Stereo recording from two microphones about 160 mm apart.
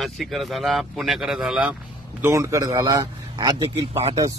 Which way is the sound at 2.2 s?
20° right (ahead or behind).